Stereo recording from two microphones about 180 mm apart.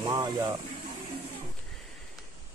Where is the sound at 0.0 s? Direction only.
20° right (ahead or behind).